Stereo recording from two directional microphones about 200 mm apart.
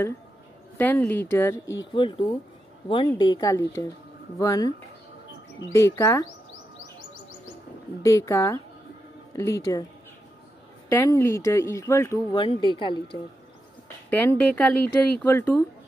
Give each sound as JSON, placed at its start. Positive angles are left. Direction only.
{"t": 0.7, "sound": "speech", "side_deg": 10}
{"t": 2.0, "sound": "speech", "side_deg": 25}
{"t": 8.0, "sound": "speech", "side_deg": 15}
{"t": 10.9, "sound": "speech", "side_deg": 10}
{"t": 14.1, "sound": "speech", "side_deg": 10}